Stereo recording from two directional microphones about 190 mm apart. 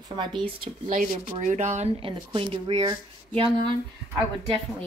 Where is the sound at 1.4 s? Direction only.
40° right (ahead or behind).